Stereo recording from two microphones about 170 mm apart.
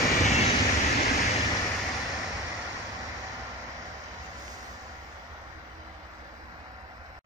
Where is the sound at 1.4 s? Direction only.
20° left (ahead or behind).